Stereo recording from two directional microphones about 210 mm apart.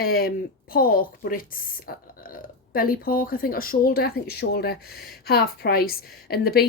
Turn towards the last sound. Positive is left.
turn(degrees=45)  # may be behind; listen again after turning